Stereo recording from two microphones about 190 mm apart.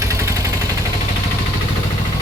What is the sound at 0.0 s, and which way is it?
Vehicle, 15° right (ahead or behind).